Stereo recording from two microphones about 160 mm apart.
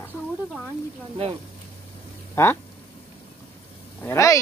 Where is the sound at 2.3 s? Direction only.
15° left (ahead or behind).